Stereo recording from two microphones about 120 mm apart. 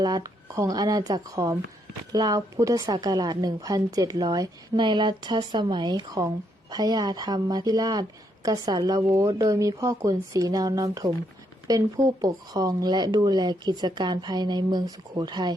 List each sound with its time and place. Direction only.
0.0 s speech: 30° right (ahead or behind)